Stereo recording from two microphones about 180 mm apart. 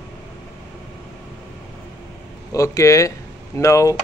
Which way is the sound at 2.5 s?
15° left (ahead or behind).